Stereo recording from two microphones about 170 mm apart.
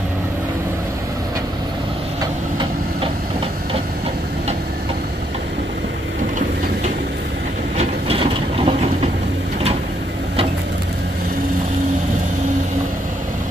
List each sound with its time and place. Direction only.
7.7 s train: 35° right (ahead or behind)